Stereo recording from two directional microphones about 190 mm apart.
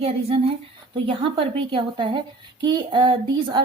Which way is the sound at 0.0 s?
30° right (ahead or behind).